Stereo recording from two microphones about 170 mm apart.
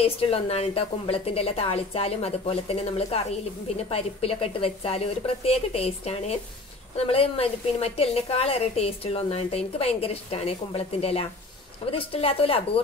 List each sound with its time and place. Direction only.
0.0 s a woman's voice: 35° left (ahead or behind)